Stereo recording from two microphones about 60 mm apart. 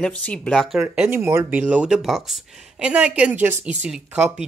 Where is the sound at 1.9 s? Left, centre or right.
Centre.